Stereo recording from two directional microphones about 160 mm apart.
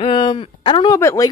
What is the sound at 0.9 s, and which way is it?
Speech, 20° left (ahead or behind).